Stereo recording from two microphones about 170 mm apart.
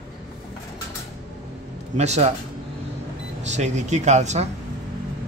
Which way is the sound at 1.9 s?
40° right (ahead or behind).